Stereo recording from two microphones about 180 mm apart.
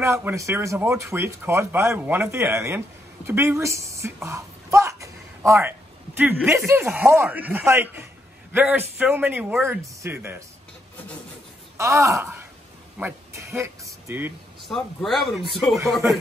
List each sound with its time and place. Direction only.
0.0 s a woman's voice: 15° right (ahead or behind)
11.7 s speech: 15° right (ahead or behind)
14.6 s a man's voice: centre (ahead or behind)